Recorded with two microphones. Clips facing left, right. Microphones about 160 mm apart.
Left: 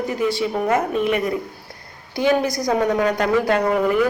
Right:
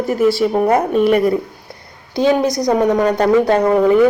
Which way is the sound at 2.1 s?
20° right (ahead or behind).